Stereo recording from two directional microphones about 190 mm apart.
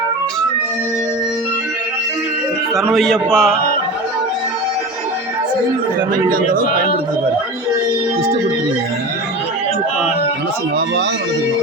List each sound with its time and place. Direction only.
2.9 s a man's voice: centre (ahead or behind)
6.3 s speech: 45° right (ahead or behind)